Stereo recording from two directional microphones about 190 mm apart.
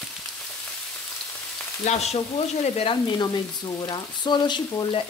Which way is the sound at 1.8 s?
35° left (ahead or behind).